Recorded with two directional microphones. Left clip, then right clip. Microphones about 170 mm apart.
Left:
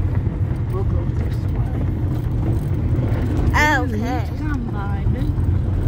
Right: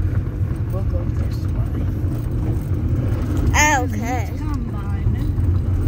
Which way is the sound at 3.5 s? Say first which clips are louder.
Right 1 dB; 10° right (ahead or behind).